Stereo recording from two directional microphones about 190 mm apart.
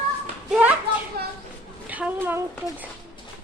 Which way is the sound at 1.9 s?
10° right (ahead or behind).